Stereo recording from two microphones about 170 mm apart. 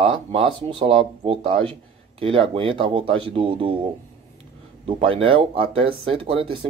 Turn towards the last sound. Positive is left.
turn(degrees=-30)  # may be behind; listen again after turning